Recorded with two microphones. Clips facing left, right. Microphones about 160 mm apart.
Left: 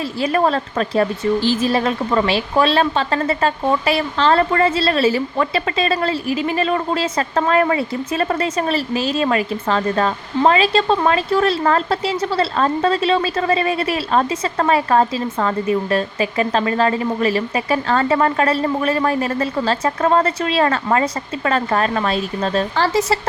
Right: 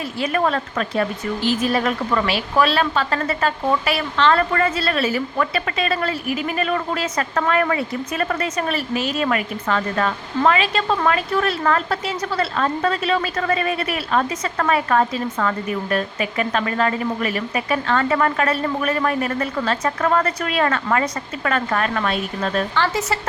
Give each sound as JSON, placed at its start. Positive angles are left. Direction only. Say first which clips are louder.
{"t": 0.2, "sound": "speech", "louder": "left 3 dB", "side_deg": 35}